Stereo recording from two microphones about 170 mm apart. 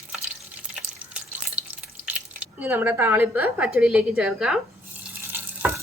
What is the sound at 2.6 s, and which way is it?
A woman's voice, 10° right (ahead or behind).